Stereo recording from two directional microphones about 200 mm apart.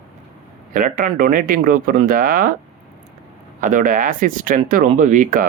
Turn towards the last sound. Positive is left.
turn(degrees=-40)  # may be behind; listen again after turning